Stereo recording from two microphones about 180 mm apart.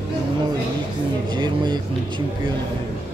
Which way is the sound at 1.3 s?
25° right (ahead or behind).